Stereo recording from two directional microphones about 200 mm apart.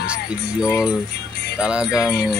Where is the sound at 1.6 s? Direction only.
5° right (ahead or behind).